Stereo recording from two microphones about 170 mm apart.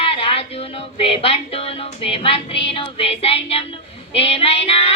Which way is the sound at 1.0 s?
35° left (ahead or behind).